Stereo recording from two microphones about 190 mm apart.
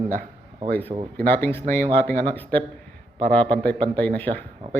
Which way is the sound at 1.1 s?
10° left (ahead or behind).